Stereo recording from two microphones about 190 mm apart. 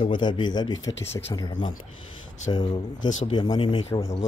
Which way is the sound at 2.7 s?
40° left (ahead or behind).